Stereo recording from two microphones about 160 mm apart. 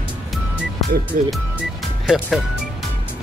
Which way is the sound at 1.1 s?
60° right (ahead or behind).